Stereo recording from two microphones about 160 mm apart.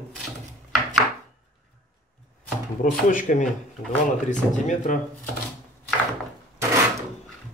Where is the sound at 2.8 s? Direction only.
55° left (ahead or behind).